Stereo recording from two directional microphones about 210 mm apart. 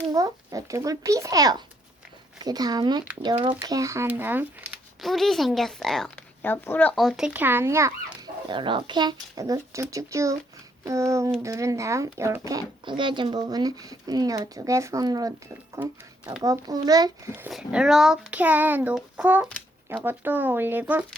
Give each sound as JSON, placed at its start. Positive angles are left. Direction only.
{"t": 0.1, "sound": "speech", "side_deg": -15}
{"t": 3.6, "sound": "speech", "side_deg": -15}